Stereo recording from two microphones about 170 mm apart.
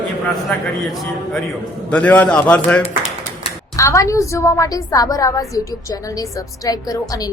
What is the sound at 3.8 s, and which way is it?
A woman's voice, 20° left (ahead or behind).